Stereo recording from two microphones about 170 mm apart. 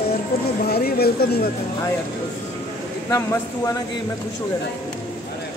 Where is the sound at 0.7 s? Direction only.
65° left (ahead or behind).